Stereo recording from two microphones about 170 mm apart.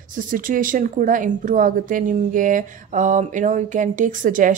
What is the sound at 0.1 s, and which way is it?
Speech, 50° right (ahead or behind).